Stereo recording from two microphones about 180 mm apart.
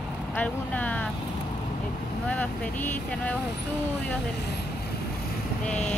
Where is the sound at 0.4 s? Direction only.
10° left (ahead or behind).